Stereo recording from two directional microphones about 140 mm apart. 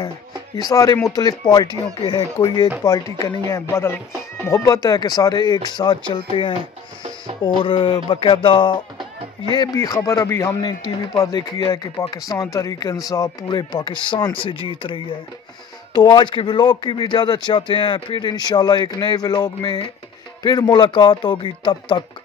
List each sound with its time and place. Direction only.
0.6 s speech: 25° left (ahead or behind)
9.6 s speech: 20° left (ahead or behind)